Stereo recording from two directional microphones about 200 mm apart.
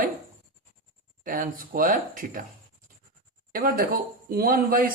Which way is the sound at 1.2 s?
45° right (ahead or behind).